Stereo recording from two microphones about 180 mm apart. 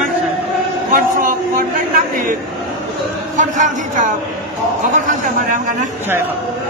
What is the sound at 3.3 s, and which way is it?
A man's voice, 45° right (ahead or behind).